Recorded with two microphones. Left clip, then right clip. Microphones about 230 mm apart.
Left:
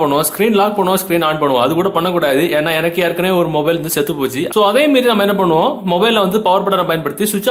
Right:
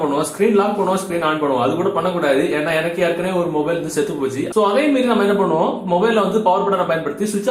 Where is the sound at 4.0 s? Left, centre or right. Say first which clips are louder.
Left 3 dB; left.